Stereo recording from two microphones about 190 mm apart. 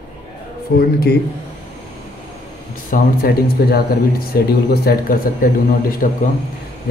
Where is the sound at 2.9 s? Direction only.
50° left (ahead or behind).